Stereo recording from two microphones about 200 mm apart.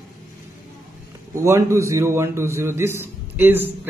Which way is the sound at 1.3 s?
15° right (ahead or behind).